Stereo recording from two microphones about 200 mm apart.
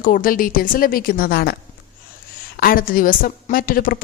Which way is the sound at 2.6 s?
45° left (ahead or behind).